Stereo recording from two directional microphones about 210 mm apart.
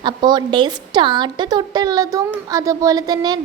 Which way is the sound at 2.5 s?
15° right (ahead or behind).